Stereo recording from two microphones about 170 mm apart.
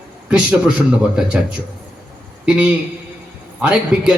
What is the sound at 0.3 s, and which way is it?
A man's voice, 5° right (ahead or behind).